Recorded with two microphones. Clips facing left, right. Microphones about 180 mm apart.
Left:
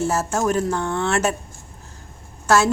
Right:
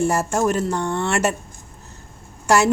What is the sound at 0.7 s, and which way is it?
Speech, 5° left (ahead or behind).